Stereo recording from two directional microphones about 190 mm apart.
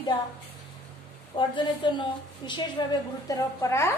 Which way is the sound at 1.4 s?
25° left (ahead or behind).